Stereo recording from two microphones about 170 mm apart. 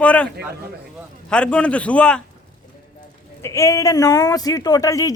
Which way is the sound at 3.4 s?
20° left (ahead or behind).